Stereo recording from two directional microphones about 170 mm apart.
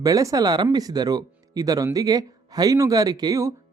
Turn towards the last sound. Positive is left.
turn(degrees=-20)  # may be behind; listen again after turning